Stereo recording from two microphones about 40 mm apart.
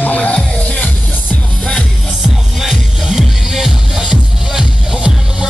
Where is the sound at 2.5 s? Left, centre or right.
Centre.